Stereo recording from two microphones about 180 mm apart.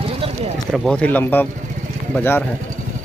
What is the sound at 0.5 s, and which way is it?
Speech, centre (ahead or behind).